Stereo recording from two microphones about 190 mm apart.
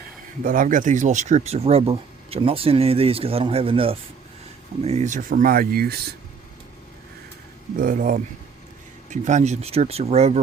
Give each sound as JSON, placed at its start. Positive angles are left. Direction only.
{"t": 0.4, "sound": "speech", "side_deg": -45}
{"t": 7.8, "sound": "speech", "side_deg": -45}